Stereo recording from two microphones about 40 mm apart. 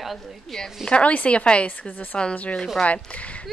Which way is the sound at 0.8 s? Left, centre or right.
Left.